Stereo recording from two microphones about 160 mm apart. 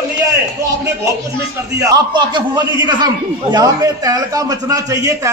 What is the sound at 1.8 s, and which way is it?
A man's voice, 25° right (ahead or behind).